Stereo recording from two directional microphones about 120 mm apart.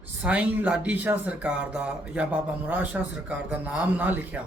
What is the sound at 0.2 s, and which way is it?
Speech, 15° right (ahead or behind).